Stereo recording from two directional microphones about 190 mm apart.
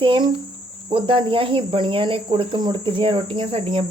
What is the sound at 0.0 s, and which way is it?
Speech, 25° right (ahead or behind).